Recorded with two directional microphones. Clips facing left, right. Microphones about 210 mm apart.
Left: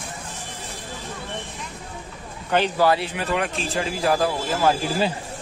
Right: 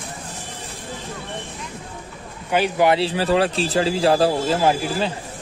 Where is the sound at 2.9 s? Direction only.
30° right (ahead or behind).